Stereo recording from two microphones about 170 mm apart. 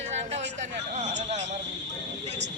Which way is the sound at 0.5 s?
40° right (ahead or behind).